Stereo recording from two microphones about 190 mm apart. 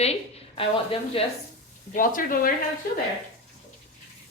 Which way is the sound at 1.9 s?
45° left (ahead or behind).